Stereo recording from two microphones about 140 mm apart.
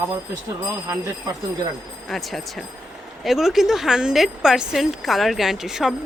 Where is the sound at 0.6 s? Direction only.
20° right (ahead or behind).